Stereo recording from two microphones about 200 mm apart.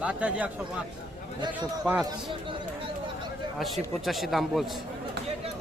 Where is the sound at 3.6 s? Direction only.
Centre (ahead or behind).